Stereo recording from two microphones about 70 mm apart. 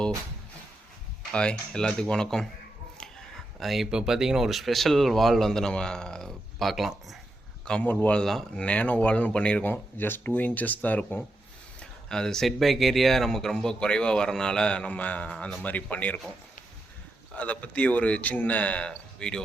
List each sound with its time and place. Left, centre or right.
1.3 s speech: centre
3.6 s speech: centre
7.6 s speech: centre
7.9 s speech: left
8.2 s speech: centre
8.6 s speech: centre
9.6 s speech: left
11.8 s speech: centre
17.3 s speech: left